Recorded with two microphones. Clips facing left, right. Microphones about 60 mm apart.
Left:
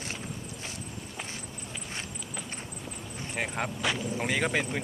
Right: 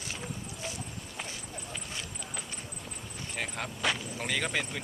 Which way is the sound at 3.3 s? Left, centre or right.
Left.